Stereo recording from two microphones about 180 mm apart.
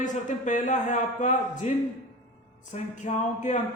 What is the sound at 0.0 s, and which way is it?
A man's voice, 45° left (ahead or behind).